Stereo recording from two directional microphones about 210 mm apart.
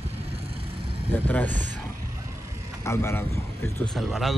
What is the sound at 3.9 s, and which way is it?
Speech, centre (ahead or behind).